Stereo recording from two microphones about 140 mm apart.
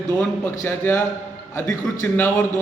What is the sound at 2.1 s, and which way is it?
Speech, 15° left (ahead or behind).